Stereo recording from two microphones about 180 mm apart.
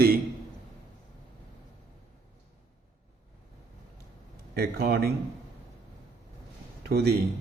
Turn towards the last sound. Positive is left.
turn(degrees=-65)  # may be behind; listen again after turning